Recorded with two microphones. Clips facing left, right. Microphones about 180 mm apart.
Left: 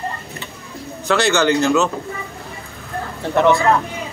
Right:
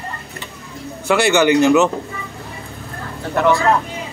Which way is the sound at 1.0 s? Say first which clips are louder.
Right 2 dB; 10° right (ahead or behind).